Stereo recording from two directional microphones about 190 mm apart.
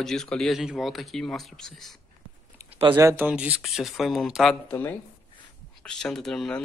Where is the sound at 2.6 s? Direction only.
30° right (ahead or behind).